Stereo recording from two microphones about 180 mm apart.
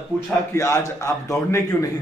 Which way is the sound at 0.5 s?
15° left (ahead or behind).